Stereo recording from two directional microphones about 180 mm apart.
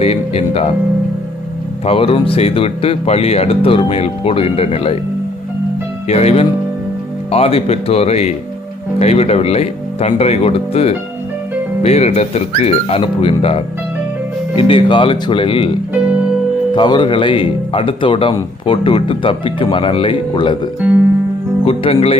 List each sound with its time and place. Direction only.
0.0 s speech: 35° left (ahead or behind)
1.9 s speech: 30° left (ahead or behind)
6.1 s speech: 35° left (ahead or behind)
16.7 s speech: 25° left (ahead or behind)
21.6 s speech: 35° left (ahead or behind)